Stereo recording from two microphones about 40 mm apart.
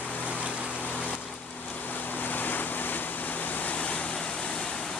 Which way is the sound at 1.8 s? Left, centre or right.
Left.